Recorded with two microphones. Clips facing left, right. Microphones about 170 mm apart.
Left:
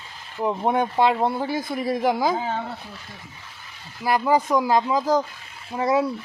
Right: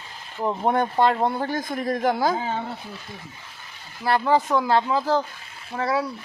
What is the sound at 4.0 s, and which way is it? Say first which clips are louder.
A man's voice: even; 10° left (ahead or behind).